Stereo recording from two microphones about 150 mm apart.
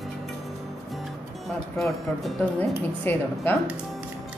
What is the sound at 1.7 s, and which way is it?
Speech, centre (ahead or behind).